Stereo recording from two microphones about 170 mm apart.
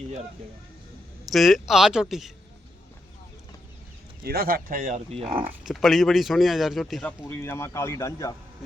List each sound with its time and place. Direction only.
1.2 s speech: centre (ahead or behind)
4.2 s speech: 60° right (ahead or behind)
5.1 s speech: 35° right (ahead or behind)
5.6 s speech: centre (ahead or behind)
7.2 s speech: 15° left (ahead or behind)